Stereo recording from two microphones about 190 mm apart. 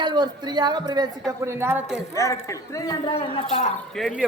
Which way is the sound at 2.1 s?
15° left (ahead or behind).